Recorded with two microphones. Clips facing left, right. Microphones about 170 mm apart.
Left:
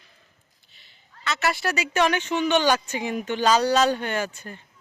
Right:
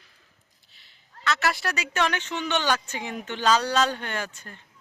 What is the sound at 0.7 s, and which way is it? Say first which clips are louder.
A woman's voice: right 1 dB; centre (ahead or behind).